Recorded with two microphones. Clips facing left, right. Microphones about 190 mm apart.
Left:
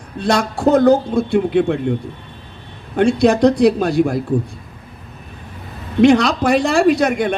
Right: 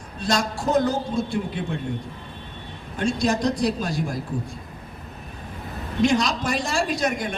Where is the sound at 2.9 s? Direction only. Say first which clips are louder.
Left 10 dB; 65° left (ahead or behind).